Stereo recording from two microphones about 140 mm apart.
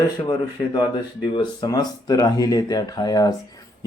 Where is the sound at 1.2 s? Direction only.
30° left (ahead or behind).